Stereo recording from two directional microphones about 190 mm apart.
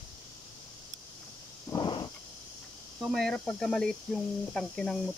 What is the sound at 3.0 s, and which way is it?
Speech, centre (ahead or behind).